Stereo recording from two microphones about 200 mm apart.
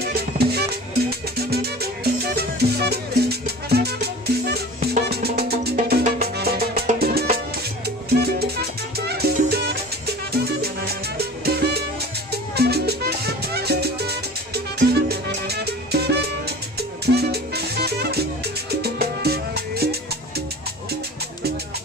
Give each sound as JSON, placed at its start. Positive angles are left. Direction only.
{"t": 0.0, "sound": "music", "side_deg": -50}